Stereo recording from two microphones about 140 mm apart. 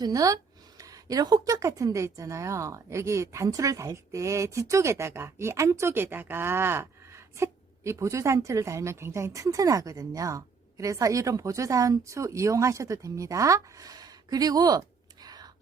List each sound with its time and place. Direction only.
0.0 s speech: 25° right (ahead or behind)